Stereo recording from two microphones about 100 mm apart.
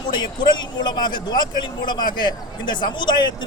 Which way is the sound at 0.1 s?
50° left (ahead or behind).